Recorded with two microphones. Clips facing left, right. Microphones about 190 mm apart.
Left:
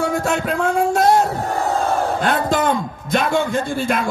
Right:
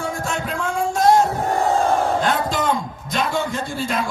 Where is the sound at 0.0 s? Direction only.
60° left (ahead or behind).